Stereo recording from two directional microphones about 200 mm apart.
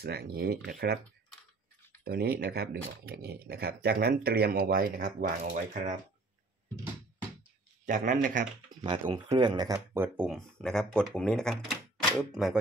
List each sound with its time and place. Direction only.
0.0 s speech: 50° right (ahead or behind)
2.0 s a man's voice: 50° right (ahead or behind)
7.8 s a man's voice: 40° right (ahead or behind)
8.6 s speech: 20° right (ahead or behind); by 12.5 s centre (ahead or behind)